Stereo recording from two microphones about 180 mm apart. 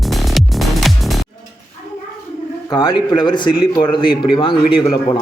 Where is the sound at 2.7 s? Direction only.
20° left (ahead or behind).